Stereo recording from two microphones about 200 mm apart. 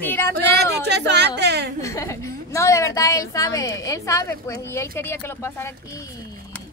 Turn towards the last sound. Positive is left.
turn(degrees=15)  # may be behind; listen again after turning